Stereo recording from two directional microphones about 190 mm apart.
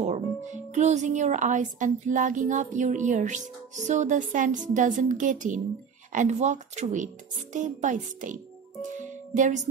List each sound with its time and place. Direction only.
0.7 s speech: 35° right (ahead or behind)
9.3 s music: 40° right (ahead or behind)